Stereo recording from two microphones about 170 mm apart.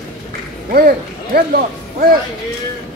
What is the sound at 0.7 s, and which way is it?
Speech, 60° right (ahead or behind).